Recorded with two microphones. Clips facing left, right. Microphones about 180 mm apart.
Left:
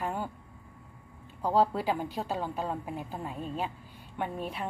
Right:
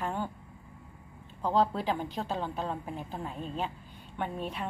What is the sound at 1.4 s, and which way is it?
A woman's voice, 10° left (ahead or behind).